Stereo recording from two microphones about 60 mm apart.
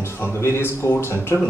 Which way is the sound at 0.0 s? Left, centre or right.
Left.